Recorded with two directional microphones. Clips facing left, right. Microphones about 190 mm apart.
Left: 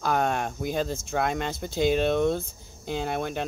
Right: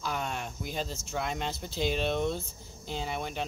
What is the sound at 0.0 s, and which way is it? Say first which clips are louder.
Speech: left 9 dB; 55° left (ahead or behind).